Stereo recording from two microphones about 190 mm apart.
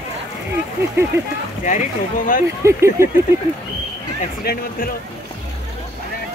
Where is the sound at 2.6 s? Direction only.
15° right (ahead or behind).